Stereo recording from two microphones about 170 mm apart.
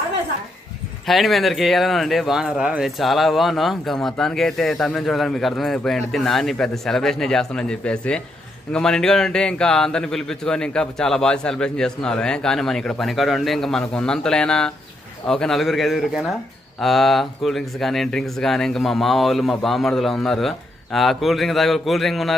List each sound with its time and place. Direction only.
1.0 s speech: centre (ahead or behind)